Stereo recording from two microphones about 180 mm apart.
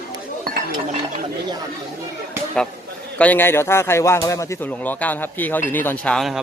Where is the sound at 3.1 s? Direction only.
10° left (ahead or behind).